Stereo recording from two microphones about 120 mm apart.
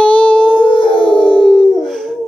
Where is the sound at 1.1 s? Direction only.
5° left (ahead or behind).